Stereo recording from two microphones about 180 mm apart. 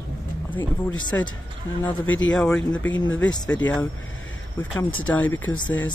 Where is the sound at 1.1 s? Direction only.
15° left (ahead or behind).